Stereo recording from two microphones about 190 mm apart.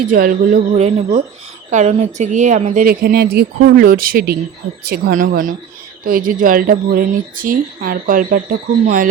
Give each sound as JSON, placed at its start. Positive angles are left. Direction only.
{"t": 0.1, "sound": "speech", "side_deg": -45}
{"t": 2.8, "sound": "speech", "side_deg": -50}